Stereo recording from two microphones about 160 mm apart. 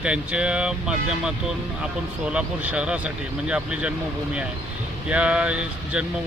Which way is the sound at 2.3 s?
10° right (ahead or behind).